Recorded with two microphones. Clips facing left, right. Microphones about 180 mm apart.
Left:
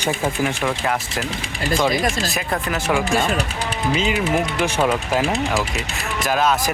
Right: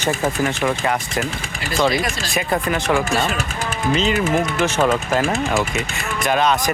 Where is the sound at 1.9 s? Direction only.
45° left (ahead or behind).